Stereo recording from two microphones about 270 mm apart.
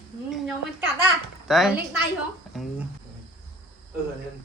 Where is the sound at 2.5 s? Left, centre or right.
Centre.